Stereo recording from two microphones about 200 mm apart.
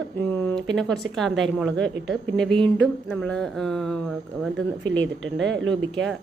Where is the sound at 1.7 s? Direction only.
60° right (ahead or behind).